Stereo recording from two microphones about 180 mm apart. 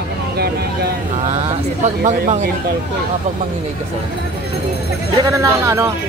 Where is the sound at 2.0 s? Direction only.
45° right (ahead or behind).